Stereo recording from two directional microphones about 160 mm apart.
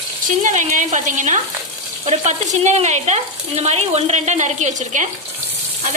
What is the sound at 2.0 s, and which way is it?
Frying, 45° right (ahead or behind).